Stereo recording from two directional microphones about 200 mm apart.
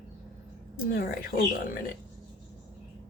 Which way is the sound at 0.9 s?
50° left (ahead or behind).